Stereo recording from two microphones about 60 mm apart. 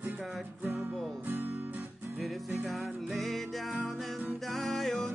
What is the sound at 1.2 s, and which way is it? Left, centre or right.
Guitar, right.